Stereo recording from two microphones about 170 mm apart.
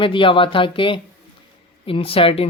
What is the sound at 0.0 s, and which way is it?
Speech, 30° left (ahead or behind).